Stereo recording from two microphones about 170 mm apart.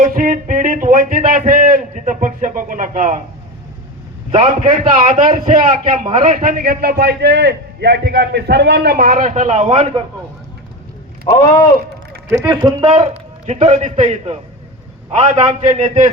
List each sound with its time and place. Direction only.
0.0 s a sound: 50° right (ahead or behind)
4.3 s a man's voice: 45° right (ahead or behind)
12.5 s a man's voice: 25° right (ahead or behind)
13.5 s a man's voice: 40° right (ahead or behind)